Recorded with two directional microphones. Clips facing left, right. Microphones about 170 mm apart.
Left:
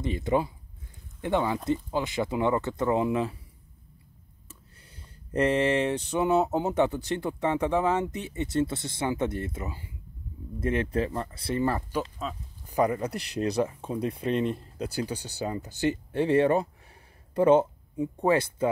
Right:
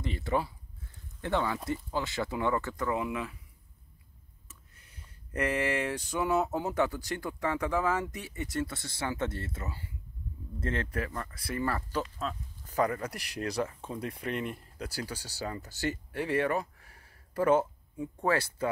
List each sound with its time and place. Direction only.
0.0 s speech: 20° left (ahead or behind)
4.5 s speech: 30° left (ahead or behind)
12.2 s speech: 10° left (ahead or behind)